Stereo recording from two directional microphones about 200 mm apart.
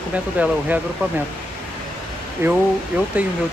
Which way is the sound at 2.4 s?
10° right (ahead or behind).